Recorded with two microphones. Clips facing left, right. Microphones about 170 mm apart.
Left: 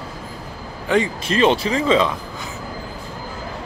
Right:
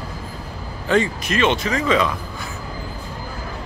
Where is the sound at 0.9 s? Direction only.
15° left (ahead or behind).